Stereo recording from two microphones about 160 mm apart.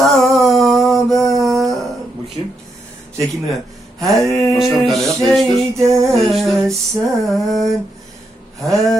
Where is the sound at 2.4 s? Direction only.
35° right (ahead or behind).